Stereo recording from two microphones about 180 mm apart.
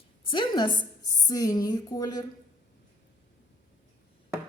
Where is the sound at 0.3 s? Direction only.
25° left (ahead or behind).